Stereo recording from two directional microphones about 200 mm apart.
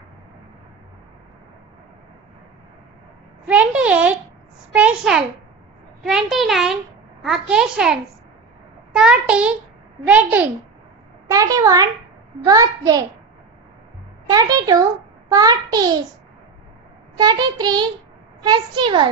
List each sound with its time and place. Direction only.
3.5 s a child's voice: 5° right (ahead or behind)
14.3 s a child's voice: 20° right (ahead or behind)
17.2 s a child's voice: 20° right (ahead or behind)